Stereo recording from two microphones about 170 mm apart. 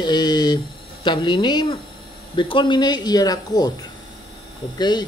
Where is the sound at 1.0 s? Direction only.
25° left (ahead or behind).